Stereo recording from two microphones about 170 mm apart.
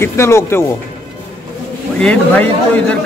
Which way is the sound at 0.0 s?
15° left (ahead or behind).